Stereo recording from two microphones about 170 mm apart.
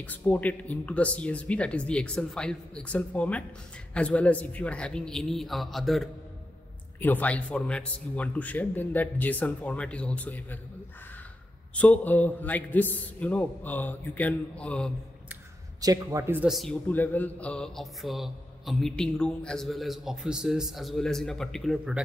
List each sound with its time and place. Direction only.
0.0 s speech: 10° left (ahead or behind)
11.7 s speech: 10° left (ahead or behind)
15.8 s a man's voice: 20° right (ahead or behind)
16.4 s speech: centre (ahead or behind)